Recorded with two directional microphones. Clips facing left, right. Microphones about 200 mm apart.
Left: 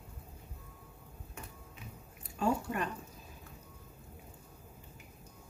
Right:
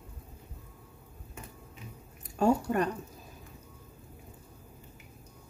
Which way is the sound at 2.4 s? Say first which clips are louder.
Right 7 dB; 40° right (ahead or behind).